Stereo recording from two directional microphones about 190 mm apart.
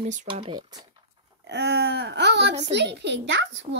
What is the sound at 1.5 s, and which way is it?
A child's voice, 60° right (ahead or behind).